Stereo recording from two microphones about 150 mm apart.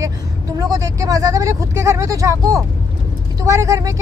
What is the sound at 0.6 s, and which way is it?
Speech, 20° right (ahead or behind).